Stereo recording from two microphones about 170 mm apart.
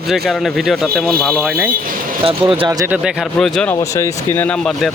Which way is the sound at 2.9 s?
5° right (ahead or behind).